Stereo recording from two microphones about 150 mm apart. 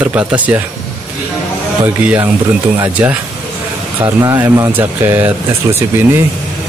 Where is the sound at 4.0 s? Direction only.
20° right (ahead or behind).